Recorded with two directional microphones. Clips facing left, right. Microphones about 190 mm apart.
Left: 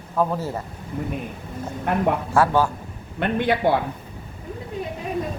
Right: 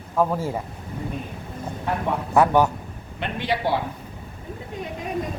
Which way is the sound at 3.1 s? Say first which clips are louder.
Left 5 dB; 55° left (ahead or behind).